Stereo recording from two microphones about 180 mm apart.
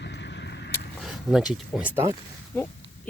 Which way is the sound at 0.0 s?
70° left (ahead or behind).